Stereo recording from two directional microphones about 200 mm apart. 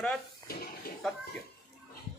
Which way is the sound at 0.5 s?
50° left (ahead or behind).